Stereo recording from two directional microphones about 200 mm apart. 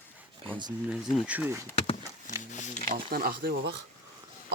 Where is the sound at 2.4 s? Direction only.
35° left (ahead or behind).